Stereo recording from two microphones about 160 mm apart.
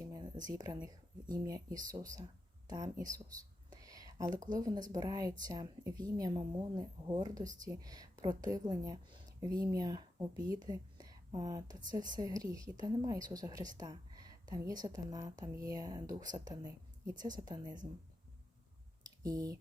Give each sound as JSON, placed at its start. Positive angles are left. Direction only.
{"t": 0.0, "sound": "a sound", "side_deg": -25}
{"t": 0.5, "sound": "a woman's voice", "side_deg": -25}
{"t": 19.2, "sound": "a woman's voice", "side_deg": -20}